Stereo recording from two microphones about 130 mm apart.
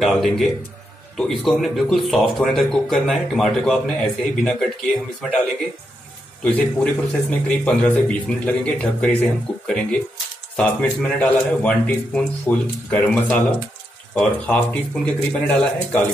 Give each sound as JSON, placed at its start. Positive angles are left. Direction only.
{"t": 0.0, "sound": "speech", "side_deg": 0}
{"t": 6.4, "sound": "speech", "side_deg": 10}